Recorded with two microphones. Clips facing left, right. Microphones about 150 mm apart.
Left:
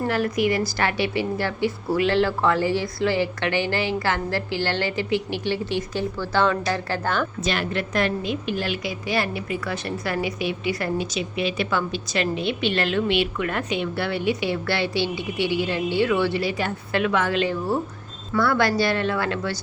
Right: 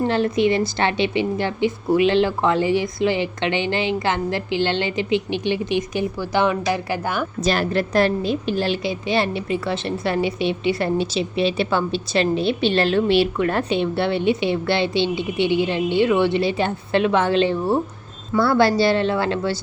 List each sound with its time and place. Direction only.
0.0 s a woman's voice: 25° right (ahead or behind)
7.4 s a woman's voice: 40° right (ahead or behind)